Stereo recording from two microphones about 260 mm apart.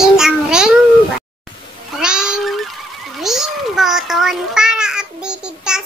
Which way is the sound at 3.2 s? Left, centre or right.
Centre.